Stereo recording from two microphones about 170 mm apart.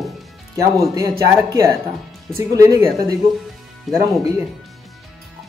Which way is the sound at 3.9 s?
Centre (ahead or behind).